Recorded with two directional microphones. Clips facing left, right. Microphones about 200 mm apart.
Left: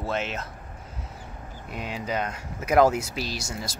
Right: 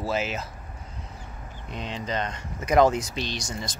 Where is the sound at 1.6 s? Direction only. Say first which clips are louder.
Even; 10° left (ahead or behind).